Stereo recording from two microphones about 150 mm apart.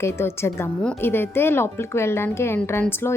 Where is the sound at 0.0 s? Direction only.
15° left (ahead or behind).